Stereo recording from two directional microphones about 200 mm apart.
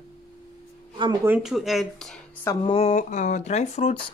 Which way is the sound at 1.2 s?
5° right (ahead or behind).